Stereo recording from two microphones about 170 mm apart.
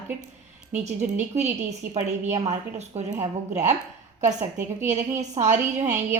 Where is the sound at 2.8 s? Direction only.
40° right (ahead or behind).